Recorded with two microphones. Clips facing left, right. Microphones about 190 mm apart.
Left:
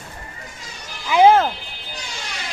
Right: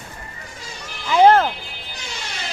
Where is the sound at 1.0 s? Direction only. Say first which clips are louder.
Even; 10° left (ahead or behind).